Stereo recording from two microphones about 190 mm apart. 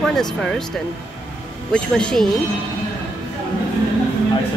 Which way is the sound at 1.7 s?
5° left (ahead or behind).